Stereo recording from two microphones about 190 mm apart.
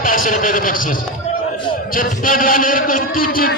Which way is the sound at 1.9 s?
45° left (ahead or behind).